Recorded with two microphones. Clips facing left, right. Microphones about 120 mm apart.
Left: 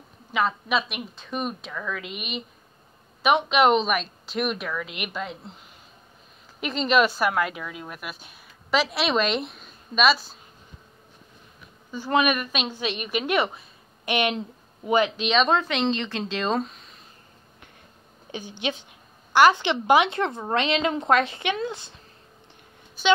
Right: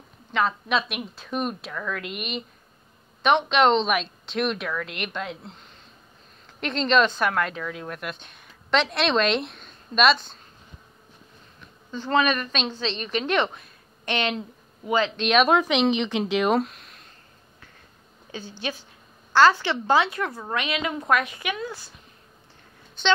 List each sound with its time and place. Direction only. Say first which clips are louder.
0.3 s speech: even; 5° left (ahead or behind)
11.9 s a woman's voice: even; 15° left (ahead or behind)
15.1 s speech: right 2 dB; 5° right (ahead or behind)
16.6 s a sound: right 1 dB; centre (ahead or behind)
18.3 s a woman's voice: left 2 dB; 20° left (ahead or behind)
23.0 s speech: left 2 dB; 5° left (ahead or behind)